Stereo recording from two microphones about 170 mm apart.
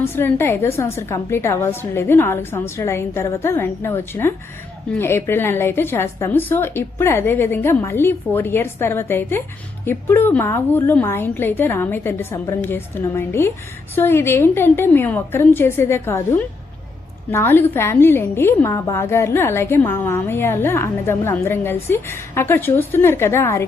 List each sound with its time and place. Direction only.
0.0 s a woman's voice: 15° left (ahead or behind)